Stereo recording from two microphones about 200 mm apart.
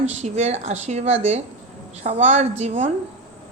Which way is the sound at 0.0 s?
35° right (ahead or behind).